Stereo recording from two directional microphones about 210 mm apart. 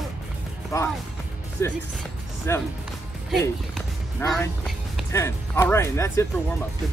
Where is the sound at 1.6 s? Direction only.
15° left (ahead or behind).